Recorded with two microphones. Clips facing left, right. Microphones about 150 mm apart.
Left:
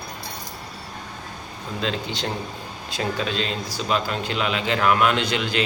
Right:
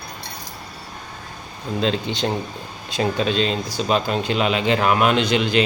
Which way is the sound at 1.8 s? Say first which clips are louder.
Right 5 dB; 20° right (ahead or behind).